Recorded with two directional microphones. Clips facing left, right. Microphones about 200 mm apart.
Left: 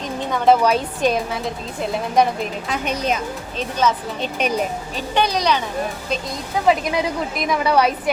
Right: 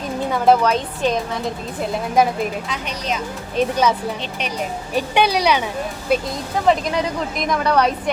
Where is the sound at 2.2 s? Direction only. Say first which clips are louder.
Even; 5° right (ahead or behind).